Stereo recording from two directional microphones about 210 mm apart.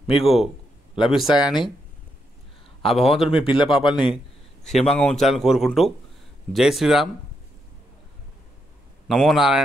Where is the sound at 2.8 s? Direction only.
Centre (ahead or behind).